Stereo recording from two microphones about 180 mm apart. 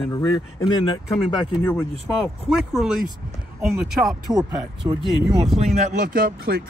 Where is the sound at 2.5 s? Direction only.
Centre (ahead or behind).